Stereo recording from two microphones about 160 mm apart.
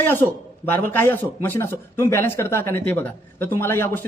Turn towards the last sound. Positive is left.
turn(degrees=15)  # may be behind; listen again after turning